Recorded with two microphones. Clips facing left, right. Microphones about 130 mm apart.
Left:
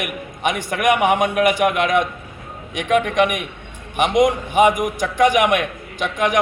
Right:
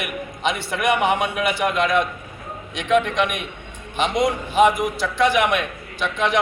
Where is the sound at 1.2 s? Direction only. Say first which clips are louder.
Left 6 dB; 50° left (ahead or behind).